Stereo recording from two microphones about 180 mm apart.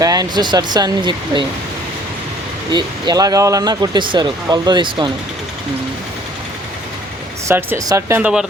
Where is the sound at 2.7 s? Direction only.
20° right (ahead or behind).